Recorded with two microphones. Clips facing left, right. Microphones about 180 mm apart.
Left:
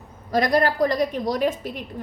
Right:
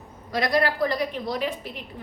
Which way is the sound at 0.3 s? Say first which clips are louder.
Left 3 dB; 45° left (ahead or behind).